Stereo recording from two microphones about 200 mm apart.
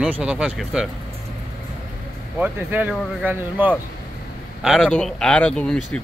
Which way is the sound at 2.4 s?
10° right (ahead or behind).